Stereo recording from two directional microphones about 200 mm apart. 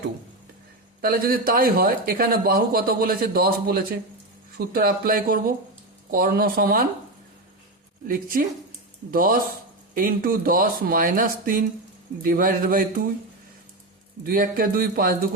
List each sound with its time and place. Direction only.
1.0 s speech: 45° right (ahead or behind)
8.0 s speech: 45° right (ahead or behind)
14.3 s speech: 45° right (ahead or behind)